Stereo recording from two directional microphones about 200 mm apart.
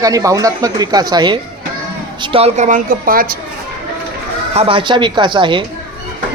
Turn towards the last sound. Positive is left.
turn(degrees=-25)  # may be behind; listen again after turning